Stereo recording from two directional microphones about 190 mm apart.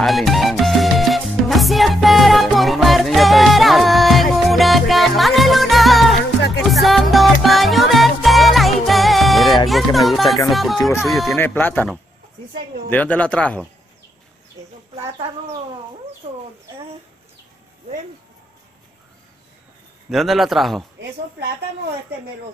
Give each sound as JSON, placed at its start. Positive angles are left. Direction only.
{"t": 0.0, "sound": "music", "side_deg": 0}
{"t": 9.7, "sound": "a man's voice", "side_deg": 0}
{"t": 11.3, "sound": "speech", "side_deg": 10}
{"t": 14.6, "sound": "bird", "side_deg": -15}
{"t": 20.1, "sound": "a man's voice", "side_deg": 0}